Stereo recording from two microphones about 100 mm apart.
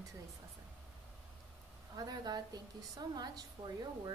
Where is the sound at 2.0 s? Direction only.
40° right (ahead or behind).